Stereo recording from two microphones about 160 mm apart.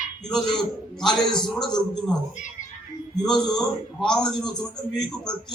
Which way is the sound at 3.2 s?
5° left (ahead or behind).